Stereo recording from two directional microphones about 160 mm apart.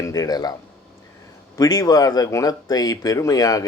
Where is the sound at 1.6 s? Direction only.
25° left (ahead or behind).